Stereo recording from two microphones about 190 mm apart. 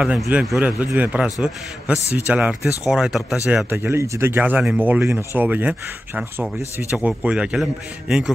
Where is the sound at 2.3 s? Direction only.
5° right (ahead or behind).